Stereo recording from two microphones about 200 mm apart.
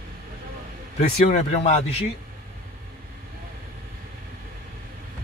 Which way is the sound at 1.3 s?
35° left (ahead or behind).